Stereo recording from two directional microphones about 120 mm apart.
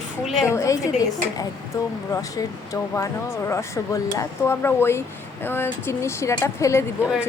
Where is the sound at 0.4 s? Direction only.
25° left (ahead or behind).